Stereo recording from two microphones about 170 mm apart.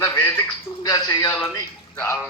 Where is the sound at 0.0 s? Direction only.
15° left (ahead or behind).